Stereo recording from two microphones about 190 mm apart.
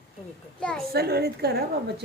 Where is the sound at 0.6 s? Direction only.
5° left (ahead or behind).